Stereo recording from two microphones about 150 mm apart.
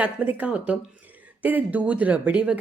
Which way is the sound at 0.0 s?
10° right (ahead or behind).